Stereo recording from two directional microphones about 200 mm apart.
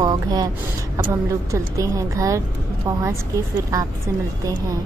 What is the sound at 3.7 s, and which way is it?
Speech, 15° right (ahead or behind).